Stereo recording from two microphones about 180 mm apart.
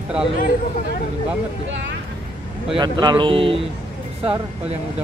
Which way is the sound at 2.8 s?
25° right (ahead or behind).